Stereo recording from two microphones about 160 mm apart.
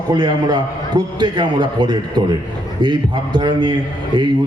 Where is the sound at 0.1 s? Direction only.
25° right (ahead or behind).